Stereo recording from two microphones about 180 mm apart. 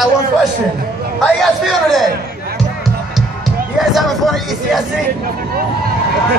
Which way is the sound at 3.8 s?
Centre (ahead or behind).